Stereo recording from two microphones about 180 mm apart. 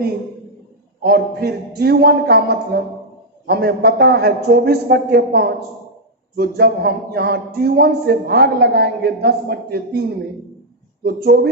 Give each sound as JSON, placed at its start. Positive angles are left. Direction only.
{"t": 1.0, "sound": "speech", "side_deg": -60}